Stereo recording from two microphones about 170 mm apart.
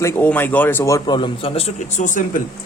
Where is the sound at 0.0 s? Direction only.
15° left (ahead or behind).